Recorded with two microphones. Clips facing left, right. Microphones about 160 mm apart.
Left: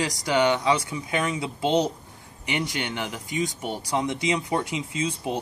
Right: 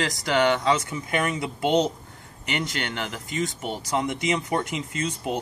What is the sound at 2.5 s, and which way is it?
Speech, 10° left (ahead or behind).